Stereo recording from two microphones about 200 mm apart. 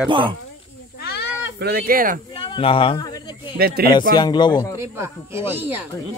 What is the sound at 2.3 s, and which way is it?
Speech, 25° left (ahead or behind).